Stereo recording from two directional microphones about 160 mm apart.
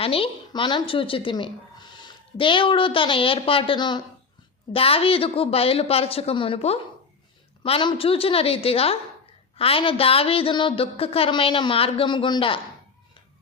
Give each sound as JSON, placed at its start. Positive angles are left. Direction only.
{"t": 0.0, "sound": "a woman's voice", "side_deg": 35}